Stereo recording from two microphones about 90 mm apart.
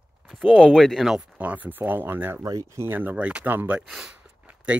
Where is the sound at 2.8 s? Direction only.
20° right (ahead or behind).